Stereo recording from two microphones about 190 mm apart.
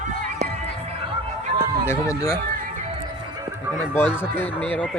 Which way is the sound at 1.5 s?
55° right (ahead or behind).